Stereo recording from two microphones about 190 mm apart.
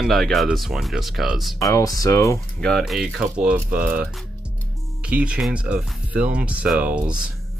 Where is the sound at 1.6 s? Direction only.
20° left (ahead or behind).